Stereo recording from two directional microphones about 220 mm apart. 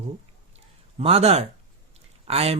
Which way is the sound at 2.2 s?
25° right (ahead or behind).